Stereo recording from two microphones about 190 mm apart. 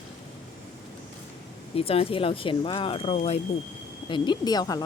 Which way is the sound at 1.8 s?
30° left (ahead or behind).